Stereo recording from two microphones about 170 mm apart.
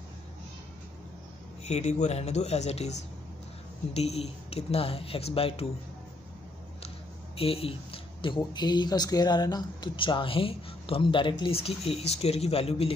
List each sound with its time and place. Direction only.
1.6 s speech: 40° left (ahead or behind)
7.3 s speech: 35° left (ahead or behind)